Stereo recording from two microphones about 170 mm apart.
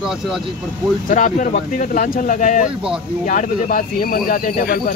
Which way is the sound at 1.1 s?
50° left (ahead or behind).